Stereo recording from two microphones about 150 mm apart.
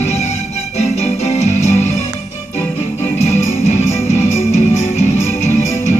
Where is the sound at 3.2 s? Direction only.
50° left (ahead or behind).